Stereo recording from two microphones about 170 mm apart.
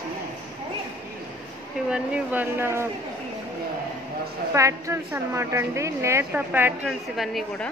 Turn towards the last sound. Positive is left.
turn(degrees=0)  # may be behind; listen again after turning